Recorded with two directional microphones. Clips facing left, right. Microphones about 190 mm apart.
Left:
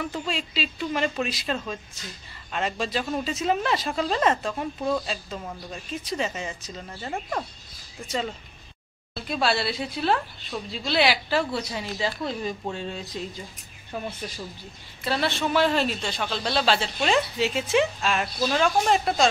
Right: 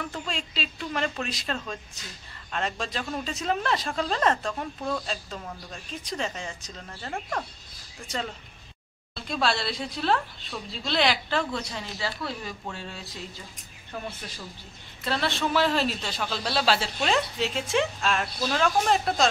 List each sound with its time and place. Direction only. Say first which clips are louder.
0.0 s speech: left 4 dB; 5° left (ahead or behind)
9.1 s speech: left 2 dB; 5° left (ahead or behind); by 13.0 s 20° left (ahead or behind)
15.0 s speech: left 2 dB; 5° left (ahead or behind)